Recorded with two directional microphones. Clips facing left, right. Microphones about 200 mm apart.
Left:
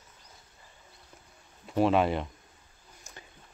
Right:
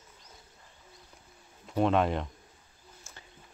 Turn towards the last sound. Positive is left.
turn(degrees=15)  # may be behind; listen again after turning